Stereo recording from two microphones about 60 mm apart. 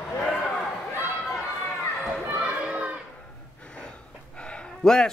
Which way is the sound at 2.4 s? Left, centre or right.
Centre.